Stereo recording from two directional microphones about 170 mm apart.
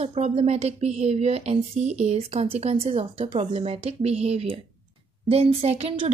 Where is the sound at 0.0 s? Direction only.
35° right (ahead or behind).